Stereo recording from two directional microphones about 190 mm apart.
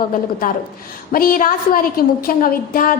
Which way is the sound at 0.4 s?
50° left (ahead or behind).